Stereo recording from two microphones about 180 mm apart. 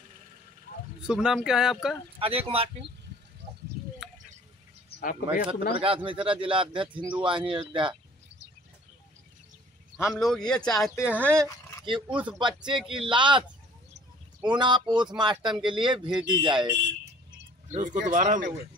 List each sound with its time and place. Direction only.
1.0 s speech: 5° right (ahead or behind)
2.1 s speech: 30° right (ahead or behind)
3.4 s bird: 40° right (ahead or behind)
4.0 s a sound: centre (ahead or behind)
5.0 s speech: 50° left (ahead or behind)
6.0 s speech: 30° right (ahead or behind)
10.0 s speech: centre (ahead or behind)
12.4 s speech: 25° right (ahead or behind)
12.7 s speech: centre (ahead or behind)
13.0 s speech: 25° right (ahead or behind)
17.6 s speech: 45° right (ahead or behind)